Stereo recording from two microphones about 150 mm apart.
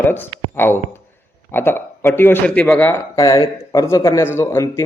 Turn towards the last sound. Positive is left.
turn(degrees=20)  # may be behind; listen again after turning